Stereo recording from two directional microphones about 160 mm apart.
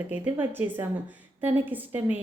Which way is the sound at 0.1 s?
10° right (ahead or behind).